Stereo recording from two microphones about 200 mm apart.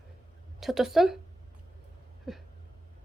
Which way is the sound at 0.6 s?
Centre (ahead or behind).